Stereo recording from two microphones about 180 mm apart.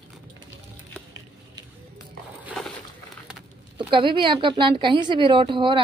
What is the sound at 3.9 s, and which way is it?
A woman's voice, 25° right (ahead or behind).